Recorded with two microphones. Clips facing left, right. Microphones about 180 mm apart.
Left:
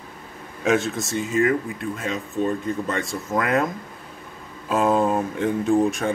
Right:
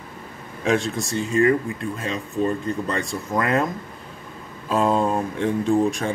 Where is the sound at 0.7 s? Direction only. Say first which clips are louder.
Left 1 dB; centre (ahead or behind).